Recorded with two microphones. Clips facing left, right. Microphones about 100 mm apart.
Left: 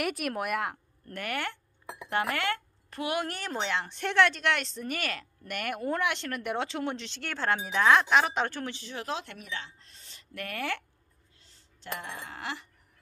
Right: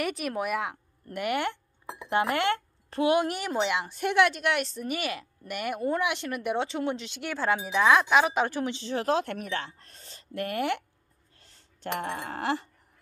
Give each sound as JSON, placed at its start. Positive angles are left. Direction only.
{"t": 0.0, "sound": "a woman's voice", "side_deg": 0}
{"t": 1.0, "sound": "speech", "side_deg": -15}
{"t": 8.7, "sound": "speech", "side_deg": -30}
{"t": 9.0, "sound": "a woman's voice", "side_deg": -50}
{"t": 10.3, "sound": "speech", "side_deg": -25}
{"t": 11.3, "sound": "a sound", "side_deg": -55}
{"t": 12.0, "sound": "a woman's voice", "side_deg": -55}